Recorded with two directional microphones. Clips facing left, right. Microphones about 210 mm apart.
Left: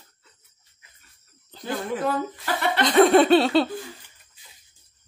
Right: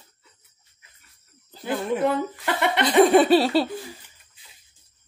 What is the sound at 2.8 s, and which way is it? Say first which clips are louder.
Laughter: even; 5° right (ahead or behind).